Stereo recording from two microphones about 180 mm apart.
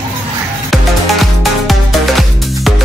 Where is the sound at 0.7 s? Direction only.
Centre (ahead or behind).